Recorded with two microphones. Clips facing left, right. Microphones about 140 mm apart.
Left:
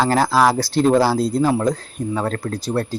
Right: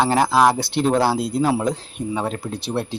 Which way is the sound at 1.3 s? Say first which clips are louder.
Left 2 dB; 5° right (ahead or behind).